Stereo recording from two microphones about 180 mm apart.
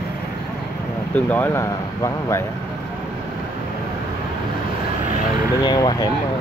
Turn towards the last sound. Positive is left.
turn(degrees=20)  # may be behind; listen again after turning